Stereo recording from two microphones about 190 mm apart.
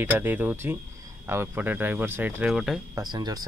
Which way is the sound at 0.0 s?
10° right (ahead or behind).